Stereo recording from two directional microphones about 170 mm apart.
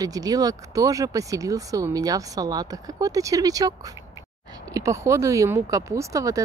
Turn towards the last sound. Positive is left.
turn(degrees=-20)  # may be behind; listen again after turning